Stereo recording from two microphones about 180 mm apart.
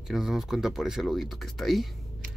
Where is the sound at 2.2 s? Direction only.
50° right (ahead or behind).